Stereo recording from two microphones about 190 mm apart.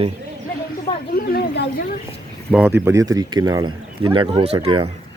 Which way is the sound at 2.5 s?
10° right (ahead or behind).